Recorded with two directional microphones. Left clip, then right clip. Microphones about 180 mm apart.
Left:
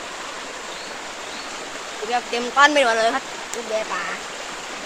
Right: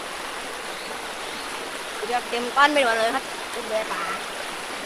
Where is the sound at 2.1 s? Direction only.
45° left (ahead or behind).